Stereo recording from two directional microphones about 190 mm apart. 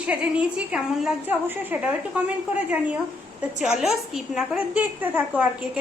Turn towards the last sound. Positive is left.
turn(degrees=-10)  # may be behind; listen again after turning